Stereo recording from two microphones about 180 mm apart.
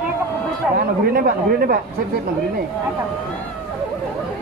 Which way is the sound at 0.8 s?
55° right (ahead or behind).